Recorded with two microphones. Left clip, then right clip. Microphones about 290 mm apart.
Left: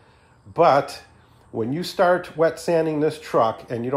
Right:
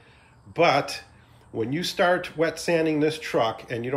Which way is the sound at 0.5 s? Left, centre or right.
Centre.